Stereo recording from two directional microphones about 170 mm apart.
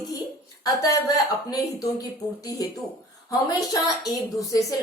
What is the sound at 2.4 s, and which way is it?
A woman's voice, 20° left (ahead or behind).